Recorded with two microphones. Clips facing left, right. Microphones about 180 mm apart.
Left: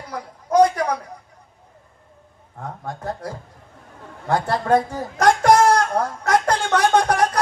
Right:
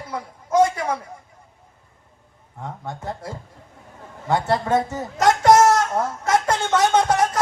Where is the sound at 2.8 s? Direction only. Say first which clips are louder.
Left 3 dB; 25° right (ahead or behind).